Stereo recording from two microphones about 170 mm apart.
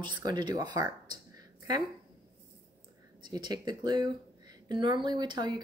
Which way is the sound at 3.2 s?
25° right (ahead or behind).